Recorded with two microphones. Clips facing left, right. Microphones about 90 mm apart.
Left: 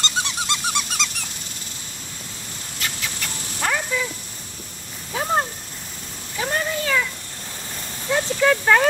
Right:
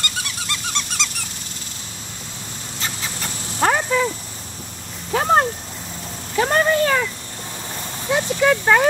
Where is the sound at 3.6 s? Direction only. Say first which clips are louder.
Right 6 dB; 45° right (ahead or behind).